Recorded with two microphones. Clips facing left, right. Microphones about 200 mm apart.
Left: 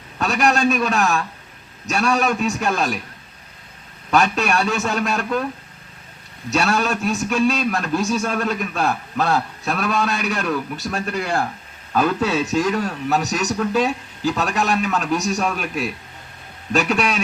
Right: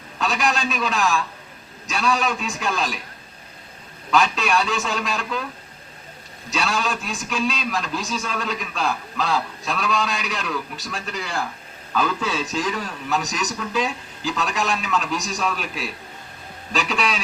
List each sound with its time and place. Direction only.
0.2 s a man's voice: 60° left (ahead or behind)
4.1 s a man's voice: 60° left (ahead or behind)
6.5 s a man's voice: 60° left (ahead or behind); by 14.3 s 40° left (ahead or behind)
14.3 s a man's voice: 60° left (ahead or behind)
16.9 s a man's voice: 50° left (ahead or behind)